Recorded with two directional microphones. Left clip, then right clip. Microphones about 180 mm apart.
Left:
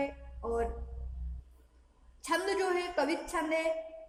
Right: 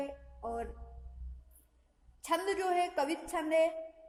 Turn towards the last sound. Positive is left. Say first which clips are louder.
# right 2 dB
turn(degrees=-40)  # may be behind; listen again after turning